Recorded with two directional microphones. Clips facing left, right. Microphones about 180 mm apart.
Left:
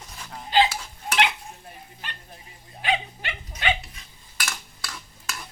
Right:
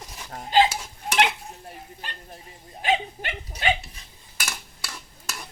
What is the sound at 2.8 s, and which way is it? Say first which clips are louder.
Dog: right 2 dB; 45° right (ahead or behind).